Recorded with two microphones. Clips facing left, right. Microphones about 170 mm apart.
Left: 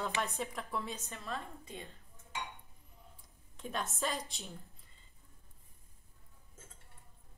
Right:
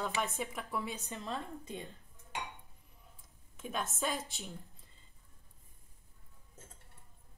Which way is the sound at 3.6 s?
Centre (ahead or behind).